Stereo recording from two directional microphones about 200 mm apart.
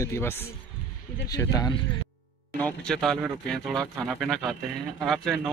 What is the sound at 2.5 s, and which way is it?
Speech, 5° left (ahead or behind).